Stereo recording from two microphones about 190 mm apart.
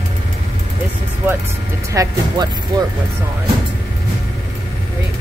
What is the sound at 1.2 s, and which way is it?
Speech, 10° right (ahead or behind).